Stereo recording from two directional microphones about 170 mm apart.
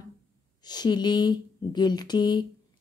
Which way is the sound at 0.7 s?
25° left (ahead or behind).